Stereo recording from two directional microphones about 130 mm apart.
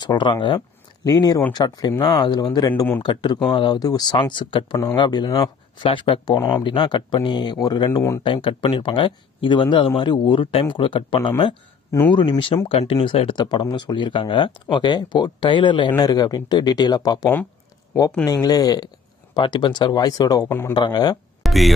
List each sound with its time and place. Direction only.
0.0 s speech: 35° left (ahead or behind)
1.0 s speech: 30° left (ahead or behind)
21.4 s a sound: centre (ahead or behind)